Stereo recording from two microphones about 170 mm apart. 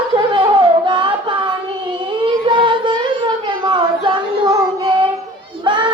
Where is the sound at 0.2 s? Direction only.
30° right (ahead or behind).